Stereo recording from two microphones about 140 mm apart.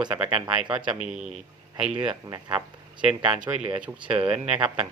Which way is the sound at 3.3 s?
35° right (ahead or behind).